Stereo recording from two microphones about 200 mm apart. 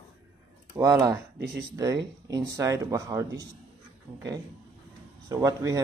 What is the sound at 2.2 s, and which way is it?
Speech, 15° right (ahead or behind).